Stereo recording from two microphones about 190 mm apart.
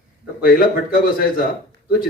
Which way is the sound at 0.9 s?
50° left (ahead or behind).